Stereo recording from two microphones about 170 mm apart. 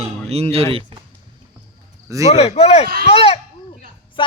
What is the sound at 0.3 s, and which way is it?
Speech, 35° right (ahead or behind).